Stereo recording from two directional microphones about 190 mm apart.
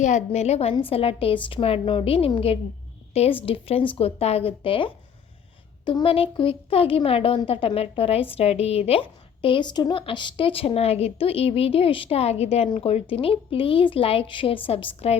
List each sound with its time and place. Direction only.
0.0 s speech: 35° left (ahead or behind)